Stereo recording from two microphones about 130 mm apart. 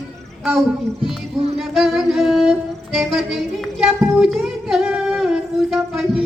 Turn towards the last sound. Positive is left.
turn(degrees=-5)  # may be behind; listen again after turning